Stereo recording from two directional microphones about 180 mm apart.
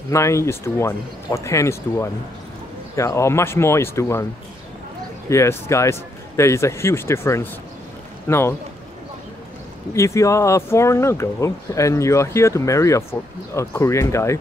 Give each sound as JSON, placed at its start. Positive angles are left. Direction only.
{"t": 0.1, "sound": "speech", "side_deg": 15}
{"t": 5.3, "sound": "speech", "side_deg": 15}
{"t": 9.9, "sound": "speech", "side_deg": 15}